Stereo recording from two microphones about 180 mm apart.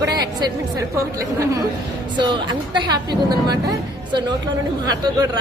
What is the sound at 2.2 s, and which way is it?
Speech, 25° right (ahead or behind).